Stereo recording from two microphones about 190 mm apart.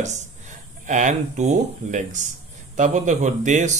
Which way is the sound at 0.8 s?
40° right (ahead or behind).